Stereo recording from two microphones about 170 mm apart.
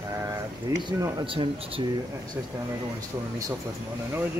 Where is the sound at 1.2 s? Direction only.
30° right (ahead or behind).